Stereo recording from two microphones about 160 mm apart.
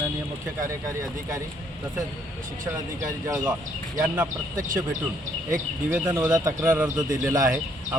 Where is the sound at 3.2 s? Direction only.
10° right (ahead or behind).